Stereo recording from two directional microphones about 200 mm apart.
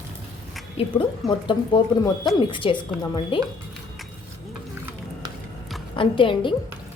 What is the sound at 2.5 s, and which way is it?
Speech, 25° left (ahead or behind).